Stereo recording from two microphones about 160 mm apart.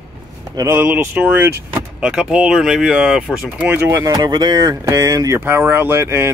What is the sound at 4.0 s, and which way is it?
Speech, 25° right (ahead or behind).